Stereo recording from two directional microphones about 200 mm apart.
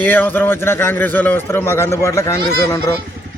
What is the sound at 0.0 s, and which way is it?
A man's voice, 10° left (ahead or behind).